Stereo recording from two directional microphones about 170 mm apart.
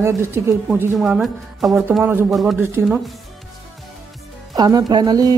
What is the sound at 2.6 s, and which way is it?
Speech, 15° right (ahead or behind).